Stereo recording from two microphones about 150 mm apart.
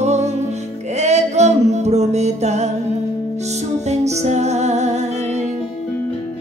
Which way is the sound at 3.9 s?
50° right (ahead or behind).